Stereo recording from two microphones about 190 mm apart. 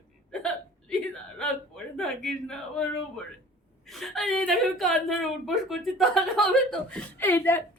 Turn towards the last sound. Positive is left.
turn(degrees=10)  # may be behind; listen again after turning